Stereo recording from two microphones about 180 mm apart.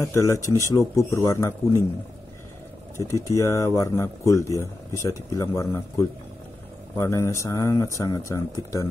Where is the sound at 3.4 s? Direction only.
15° left (ahead or behind).